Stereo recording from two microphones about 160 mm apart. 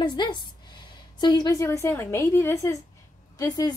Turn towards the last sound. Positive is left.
turn(degrees=25)  # may be behind; listen again after turning